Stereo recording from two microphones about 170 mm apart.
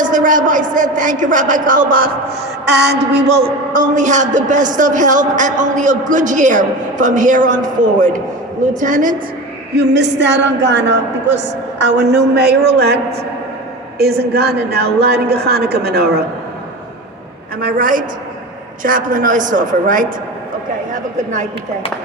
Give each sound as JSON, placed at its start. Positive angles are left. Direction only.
{"t": 0.0, "sound": "a man's voice", "side_deg": -50}
{"t": 2.6, "sound": "a sound", "side_deg": -80}
{"t": 3.4, "sound": "a man's voice", "side_deg": -50}
{"t": 8.8, "sound": "a man's voice", "side_deg": -50}
{"t": 9.7, "sound": "a woman's voice", "side_deg": -85}
{"t": 14.0, "sound": "a woman's voice", "side_deg": -70}
{"t": 17.6, "sound": "a woman's voice", "side_deg": -60}